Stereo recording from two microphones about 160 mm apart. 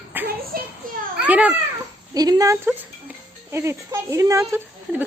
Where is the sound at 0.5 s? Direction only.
65° right (ahead or behind).